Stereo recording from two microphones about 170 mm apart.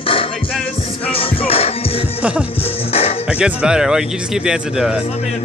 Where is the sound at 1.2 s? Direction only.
35° left (ahead or behind).